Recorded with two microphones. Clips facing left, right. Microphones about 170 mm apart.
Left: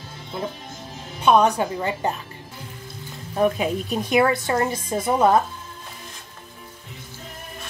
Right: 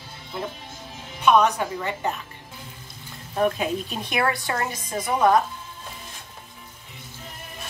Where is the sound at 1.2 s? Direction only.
30° left (ahead or behind).